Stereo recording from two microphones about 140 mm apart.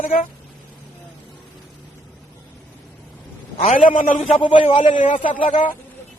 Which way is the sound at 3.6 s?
70° left (ahead or behind).